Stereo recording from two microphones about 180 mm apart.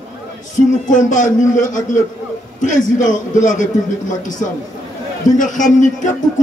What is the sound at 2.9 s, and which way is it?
Speech, 45° left (ahead or behind).